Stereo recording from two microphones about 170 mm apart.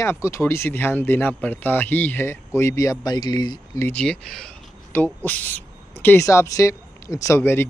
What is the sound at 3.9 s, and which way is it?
Speech, 5° left (ahead or behind).